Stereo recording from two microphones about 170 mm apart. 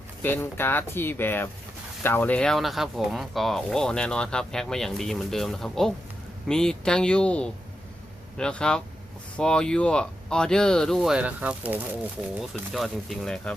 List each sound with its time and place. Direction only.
0.2 s speech: 10° left (ahead or behind)